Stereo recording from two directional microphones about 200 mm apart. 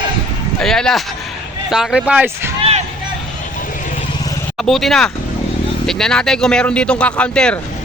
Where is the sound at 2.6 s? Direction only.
30° right (ahead or behind).